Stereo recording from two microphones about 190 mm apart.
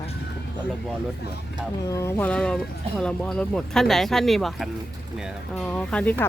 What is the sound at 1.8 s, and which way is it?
Speech, 15° left (ahead or behind).